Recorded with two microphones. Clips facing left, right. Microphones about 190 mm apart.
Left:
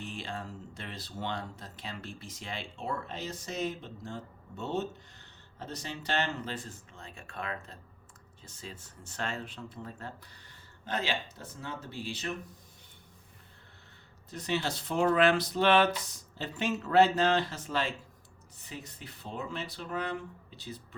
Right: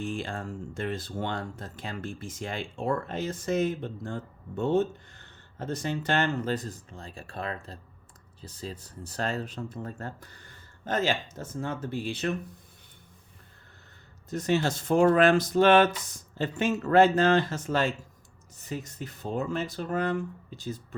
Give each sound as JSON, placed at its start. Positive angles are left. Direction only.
{"t": 0.0, "sound": "speech", "side_deg": -45}
{"t": 14.3, "sound": "speech", "side_deg": -45}